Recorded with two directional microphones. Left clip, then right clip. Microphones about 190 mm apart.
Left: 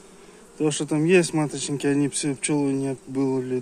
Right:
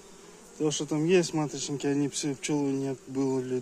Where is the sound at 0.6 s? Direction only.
Centre (ahead or behind).